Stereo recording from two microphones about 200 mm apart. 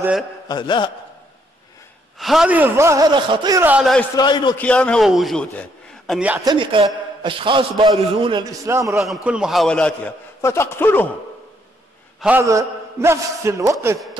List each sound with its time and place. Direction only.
0.5 s a man's voice: 25° left (ahead or behind)
2.1 s a man's voice: centre (ahead or behind)
4.2 s a man's voice: 20° left (ahead or behind)
4.6 s a man's voice: 5° left (ahead or behind)
6.1 s a man's voice: 5° right (ahead or behind)
6.4 s a man's voice: 25° right (ahead or behind)
9.0 s a man's voice: 5° right (ahead or behind)
12.2 s a man's voice: 10° right (ahead or behind)